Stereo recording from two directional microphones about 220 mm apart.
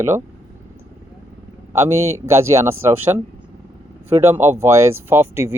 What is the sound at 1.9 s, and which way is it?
Speech, 70° right (ahead or behind).